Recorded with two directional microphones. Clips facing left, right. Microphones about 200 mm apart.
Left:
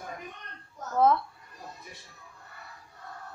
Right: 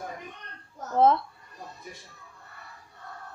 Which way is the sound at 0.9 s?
25° right (ahead or behind).